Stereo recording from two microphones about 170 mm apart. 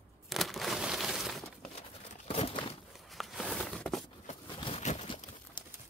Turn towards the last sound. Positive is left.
turn(degrees=40)  # may be behind; listen again after turning